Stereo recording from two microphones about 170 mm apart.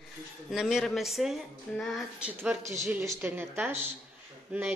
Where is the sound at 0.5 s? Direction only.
Centre (ahead or behind).